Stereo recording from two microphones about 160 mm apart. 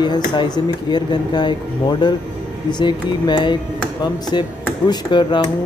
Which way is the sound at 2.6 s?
30° left (ahead or behind).